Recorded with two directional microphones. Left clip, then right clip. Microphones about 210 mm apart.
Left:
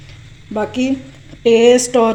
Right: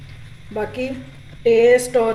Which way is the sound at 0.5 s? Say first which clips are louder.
Left 6 dB; 35° left (ahead or behind).